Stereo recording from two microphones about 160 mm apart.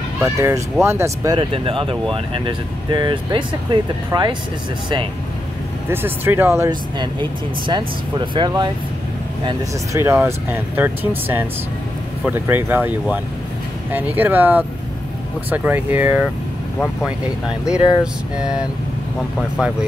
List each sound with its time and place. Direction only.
0.2 s speech: 15° right (ahead or behind)
1.4 s speech: 35° right (ahead or behind)
5.9 s speech: 15° right (ahead or behind)
6.7 s speech: 30° right (ahead or behind)
9.9 s speech: 15° right (ahead or behind)
13.9 s speech: 10° right (ahead or behind)